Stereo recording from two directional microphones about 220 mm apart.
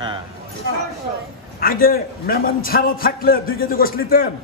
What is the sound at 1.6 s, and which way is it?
A man's voice, 40° left (ahead or behind).